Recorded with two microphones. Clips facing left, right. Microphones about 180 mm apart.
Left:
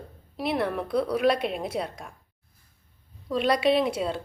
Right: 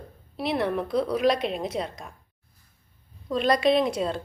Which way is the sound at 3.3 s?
10° left (ahead or behind).